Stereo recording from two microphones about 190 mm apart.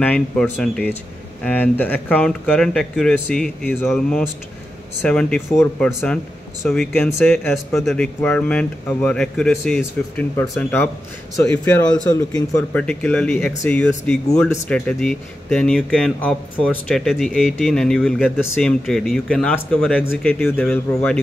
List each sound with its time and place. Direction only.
0.0 s speech: 5° left (ahead or behind)
11.3 s speech: 15° left (ahead or behind)
12.7 s speech: 10° left (ahead or behind)